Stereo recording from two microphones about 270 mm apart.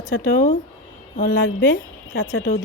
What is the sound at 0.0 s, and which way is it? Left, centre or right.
A woman's voice, left.